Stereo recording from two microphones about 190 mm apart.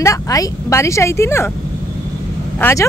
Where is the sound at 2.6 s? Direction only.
15° left (ahead or behind).